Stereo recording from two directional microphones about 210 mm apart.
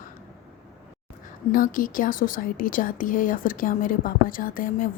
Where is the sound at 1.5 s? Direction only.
40° left (ahead or behind).